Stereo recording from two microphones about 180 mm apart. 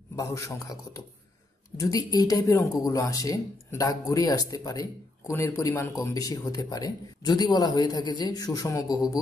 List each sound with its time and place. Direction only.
0.1 s a man's voice: 15° left (ahead or behind)